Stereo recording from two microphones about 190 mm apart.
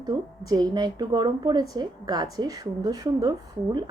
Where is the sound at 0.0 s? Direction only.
20° right (ahead or behind).